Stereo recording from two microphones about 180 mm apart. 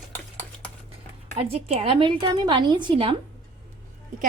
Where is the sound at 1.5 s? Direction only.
30° right (ahead or behind).